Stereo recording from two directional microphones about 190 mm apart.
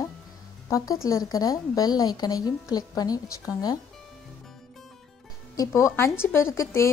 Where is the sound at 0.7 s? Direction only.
20° left (ahead or behind).